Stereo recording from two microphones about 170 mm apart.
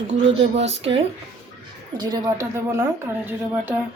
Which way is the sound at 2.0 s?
25° right (ahead or behind).